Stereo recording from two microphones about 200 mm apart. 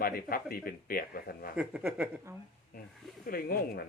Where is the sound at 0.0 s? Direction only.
45° left (ahead or behind).